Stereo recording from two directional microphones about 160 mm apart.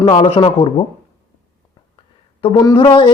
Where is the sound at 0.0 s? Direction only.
35° left (ahead or behind).